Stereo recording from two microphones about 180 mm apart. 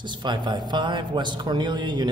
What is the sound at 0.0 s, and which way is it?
A man's voice, 25° right (ahead or behind).